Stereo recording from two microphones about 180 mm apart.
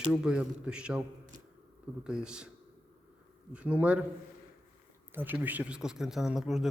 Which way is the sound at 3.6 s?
5° right (ahead or behind).